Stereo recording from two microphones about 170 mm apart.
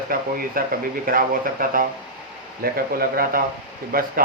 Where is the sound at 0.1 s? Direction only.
55° right (ahead or behind).